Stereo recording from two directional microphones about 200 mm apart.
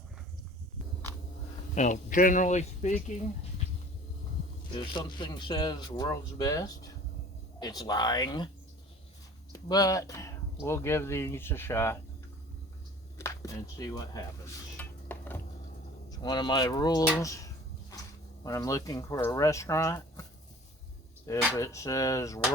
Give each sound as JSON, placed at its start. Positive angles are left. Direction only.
{"t": 1.7, "sound": "speech", "side_deg": 40}
{"t": 4.7, "sound": "speech", "side_deg": 20}
{"t": 9.5, "sound": "speech", "side_deg": 20}
{"t": 13.1, "sound": "speech", "side_deg": 15}
{"t": 14.8, "sound": "a sound", "side_deg": 10}
{"t": 16.0, "sound": "speech", "side_deg": 20}
{"t": 21.3, "sound": "speech", "side_deg": 15}